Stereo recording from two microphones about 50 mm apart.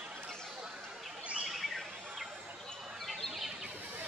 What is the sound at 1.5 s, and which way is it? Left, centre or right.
Bird, centre.